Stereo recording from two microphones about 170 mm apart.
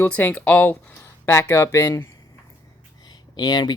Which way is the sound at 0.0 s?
10° left (ahead or behind).